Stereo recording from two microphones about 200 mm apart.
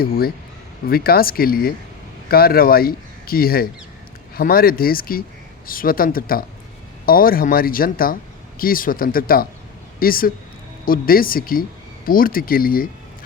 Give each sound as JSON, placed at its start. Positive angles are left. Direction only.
{"t": 0.0, "sound": "a man's voice", "side_deg": 50}